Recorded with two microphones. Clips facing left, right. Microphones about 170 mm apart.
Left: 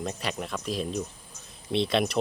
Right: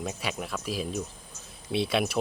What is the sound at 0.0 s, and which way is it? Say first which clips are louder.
Speech: left 1 dB; 5° right (ahead or behind).